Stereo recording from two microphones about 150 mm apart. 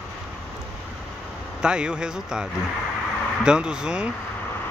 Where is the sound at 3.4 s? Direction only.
5° right (ahead or behind).